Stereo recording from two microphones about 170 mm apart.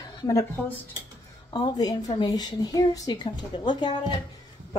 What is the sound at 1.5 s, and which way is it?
A woman's voice, 25° left (ahead or behind).